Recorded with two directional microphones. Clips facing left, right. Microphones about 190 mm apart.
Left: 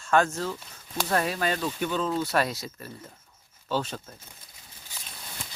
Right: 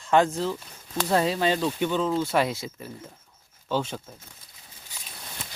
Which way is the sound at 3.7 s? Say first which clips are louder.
Right 2 dB; 10° right (ahead or behind).